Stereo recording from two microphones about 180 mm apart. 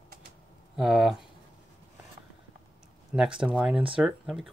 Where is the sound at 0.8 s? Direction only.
Centre (ahead or behind).